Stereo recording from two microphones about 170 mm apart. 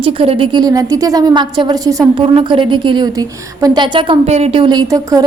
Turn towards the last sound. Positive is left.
turn(degrees=-20)  # may be behind; listen again after turning